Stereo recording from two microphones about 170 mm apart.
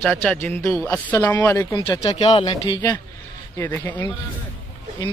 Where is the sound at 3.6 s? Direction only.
10° left (ahead or behind).